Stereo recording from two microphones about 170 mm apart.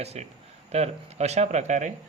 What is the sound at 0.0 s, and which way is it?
Speech, 40° right (ahead or behind).